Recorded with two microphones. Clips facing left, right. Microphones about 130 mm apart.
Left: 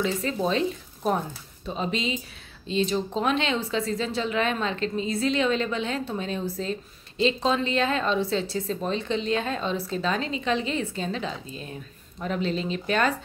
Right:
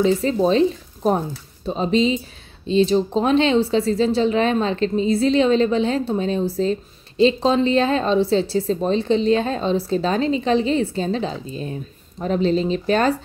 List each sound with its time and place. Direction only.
0.0 s speech: 30° right (ahead or behind)